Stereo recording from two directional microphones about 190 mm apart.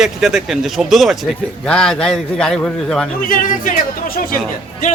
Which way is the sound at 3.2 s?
45° left (ahead or behind).